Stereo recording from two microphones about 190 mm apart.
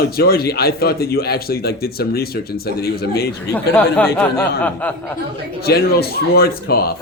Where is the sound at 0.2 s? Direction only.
55° left (ahead or behind).